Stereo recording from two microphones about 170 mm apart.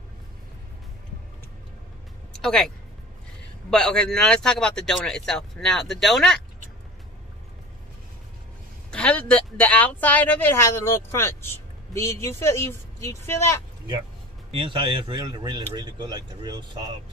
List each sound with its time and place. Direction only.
2.3 s speech: 5° left (ahead or behind)
3.7 s speech: 5° left (ahead or behind)
8.9 s speech: 5° left (ahead or behind)
14.5 s speech: 30° right (ahead or behind)